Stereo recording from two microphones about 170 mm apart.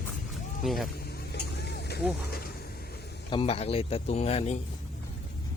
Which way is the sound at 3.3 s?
35° left (ahead or behind).